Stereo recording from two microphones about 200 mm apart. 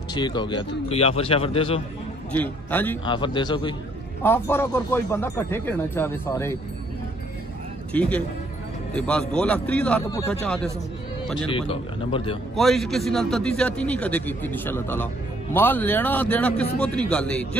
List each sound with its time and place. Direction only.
0.1 s a man's voice: 20° left (ahead or behind)
2.3 s speech: 10° left (ahead or behind)
3.1 s a man's voice: 25° left (ahead or behind)
4.2 s speech: 10° left (ahead or behind)
7.9 s a man's voice: 5° left (ahead or behind)
11.5 s a man's voice: 25° left (ahead or behind)
12.5 s a man's voice: centre (ahead or behind)